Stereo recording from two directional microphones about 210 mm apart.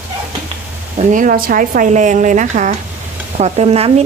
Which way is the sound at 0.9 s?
40° right (ahead or behind).